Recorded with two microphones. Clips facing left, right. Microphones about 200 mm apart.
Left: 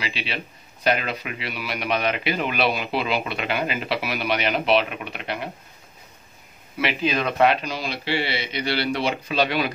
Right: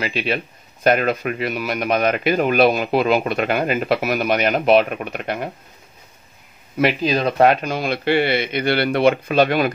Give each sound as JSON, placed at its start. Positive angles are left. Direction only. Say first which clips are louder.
{"t": 0.0, "sound": "a man's voice", "louder": "right 8 dB", "side_deg": -50}
{"t": 6.8, "sound": "a man's voice", "louder": "right 6 dB", "side_deg": -40}